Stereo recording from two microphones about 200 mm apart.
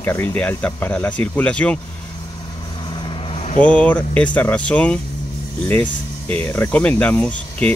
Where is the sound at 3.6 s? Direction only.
5° left (ahead or behind).